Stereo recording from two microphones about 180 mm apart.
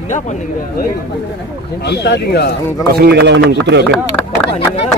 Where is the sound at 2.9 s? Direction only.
65° right (ahead or behind).